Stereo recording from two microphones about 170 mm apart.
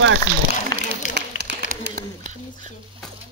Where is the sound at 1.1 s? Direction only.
85° right.